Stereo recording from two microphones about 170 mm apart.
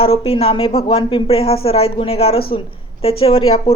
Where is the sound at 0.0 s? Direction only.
35° left (ahead or behind).